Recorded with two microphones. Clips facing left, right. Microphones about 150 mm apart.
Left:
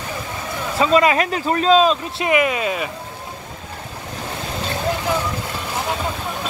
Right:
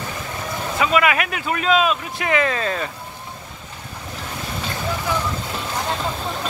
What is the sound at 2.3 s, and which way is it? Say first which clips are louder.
Speech: left 2 dB; 15° left (ahead or behind).